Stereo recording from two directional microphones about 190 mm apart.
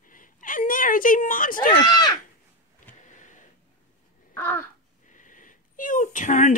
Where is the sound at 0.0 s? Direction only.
45° left (ahead or behind).